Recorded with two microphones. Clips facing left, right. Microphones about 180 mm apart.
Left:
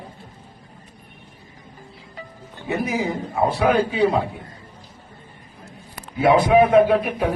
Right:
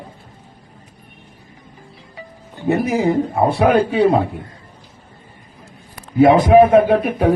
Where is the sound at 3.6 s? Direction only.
60° right (ahead or behind).